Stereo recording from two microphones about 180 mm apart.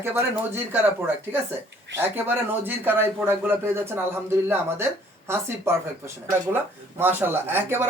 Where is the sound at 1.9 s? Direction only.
10° right (ahead or behind).